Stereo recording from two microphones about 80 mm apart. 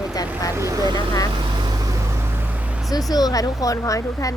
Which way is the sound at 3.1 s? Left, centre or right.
Left.